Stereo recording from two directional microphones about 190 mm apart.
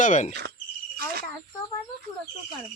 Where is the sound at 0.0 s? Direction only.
40° left (ahead or behind).